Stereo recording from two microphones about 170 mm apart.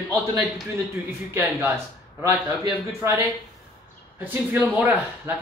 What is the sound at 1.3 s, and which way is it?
Speech, 15° right (ahead or behind).